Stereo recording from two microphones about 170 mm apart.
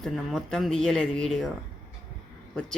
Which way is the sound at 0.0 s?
Centre (ahead or behind).